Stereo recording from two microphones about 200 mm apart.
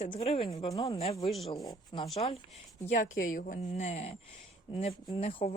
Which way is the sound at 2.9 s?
40° left (ahead or behind).